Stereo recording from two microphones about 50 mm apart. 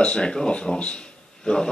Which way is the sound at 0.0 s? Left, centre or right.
Centre.